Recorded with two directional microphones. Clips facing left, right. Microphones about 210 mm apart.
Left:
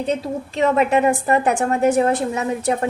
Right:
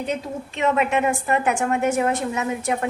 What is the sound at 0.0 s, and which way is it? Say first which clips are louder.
A woman's voice: left 4 dB; 35° left (ahead or behind).